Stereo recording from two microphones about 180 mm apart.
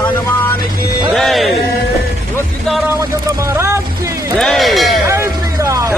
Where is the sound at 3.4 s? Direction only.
15° right (ahead or behind).